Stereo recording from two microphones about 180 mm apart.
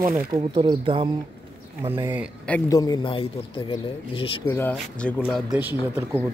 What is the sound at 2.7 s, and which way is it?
Speech, 20° left (ahead or behind).